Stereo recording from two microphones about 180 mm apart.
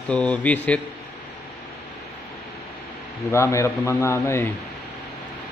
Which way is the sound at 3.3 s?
15° left (ahead or behind).